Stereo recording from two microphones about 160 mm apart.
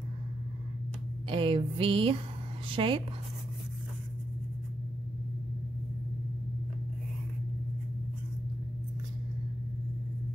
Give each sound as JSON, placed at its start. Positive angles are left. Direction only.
{"t": 1.3, "sound": "music", "side_deg": -35}